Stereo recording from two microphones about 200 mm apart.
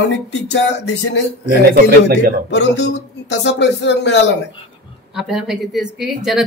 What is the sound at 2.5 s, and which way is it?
A man's voice, 60° left (ahead or behind).